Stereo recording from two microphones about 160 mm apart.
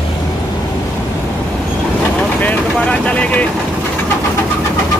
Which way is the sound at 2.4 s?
10° left (ahead or behind).